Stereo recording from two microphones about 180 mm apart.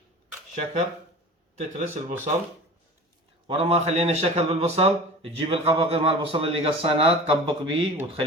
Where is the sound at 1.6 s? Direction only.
40° right (ahead or behind).